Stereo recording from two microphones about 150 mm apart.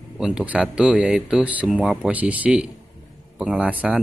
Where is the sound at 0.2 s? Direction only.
5° right (ahead or behind).